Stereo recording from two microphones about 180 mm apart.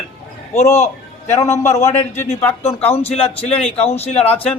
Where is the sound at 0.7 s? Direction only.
40° left (ahead or behind).